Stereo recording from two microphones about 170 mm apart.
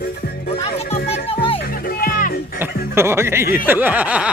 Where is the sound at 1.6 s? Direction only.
60° left (ahead or behind).